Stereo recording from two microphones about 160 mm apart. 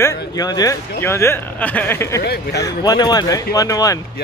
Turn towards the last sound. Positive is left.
turn(degrees=20)  # may be behind; listen again after turning